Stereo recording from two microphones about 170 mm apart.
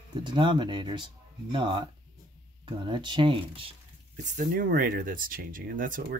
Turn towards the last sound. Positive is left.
turn(degrees=-55)  # may be behind; listen again after turning